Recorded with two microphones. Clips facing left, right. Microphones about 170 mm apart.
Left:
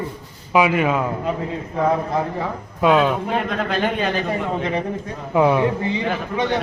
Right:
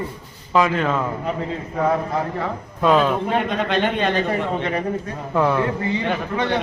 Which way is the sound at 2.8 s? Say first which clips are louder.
Left 1 dB; centre (ahead or behind).